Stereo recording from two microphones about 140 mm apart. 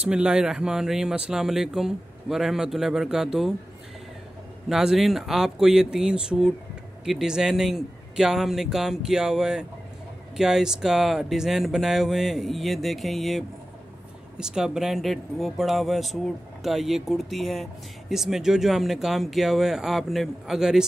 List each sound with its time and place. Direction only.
0.0 s speech: 5° right (ahead or behind)
4.6 s speech: 5° right (ahead or behind)